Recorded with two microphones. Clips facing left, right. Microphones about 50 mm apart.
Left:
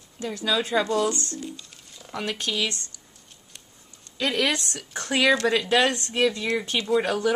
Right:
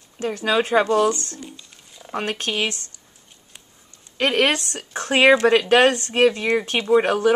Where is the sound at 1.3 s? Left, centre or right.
Centre.